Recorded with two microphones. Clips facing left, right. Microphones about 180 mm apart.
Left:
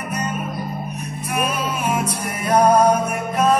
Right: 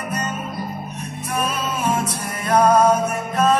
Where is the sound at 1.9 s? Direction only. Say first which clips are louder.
Even; 10° left (ahead or behind).